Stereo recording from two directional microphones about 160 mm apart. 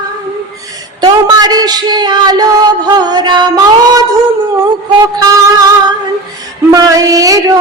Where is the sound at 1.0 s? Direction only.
25° right (ahead or behind).